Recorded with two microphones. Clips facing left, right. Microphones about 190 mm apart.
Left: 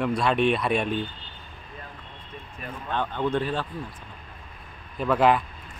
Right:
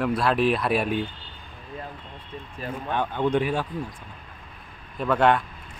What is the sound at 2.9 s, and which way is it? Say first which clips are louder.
Speech: right 2 dB; 15° right (ahead or behind).